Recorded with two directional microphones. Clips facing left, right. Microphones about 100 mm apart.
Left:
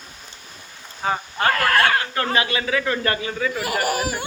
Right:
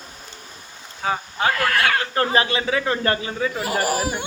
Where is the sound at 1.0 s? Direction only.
5° right (ahead or behind).